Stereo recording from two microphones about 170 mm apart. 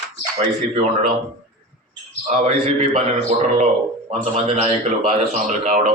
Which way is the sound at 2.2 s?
45° right (ahead or behind).